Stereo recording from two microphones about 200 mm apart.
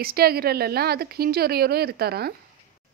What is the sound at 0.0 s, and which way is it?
A woman's voice, 50° right (ahead or behind).